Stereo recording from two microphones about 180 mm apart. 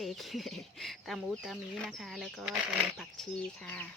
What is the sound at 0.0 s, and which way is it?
Speech, centre (ahead or behind).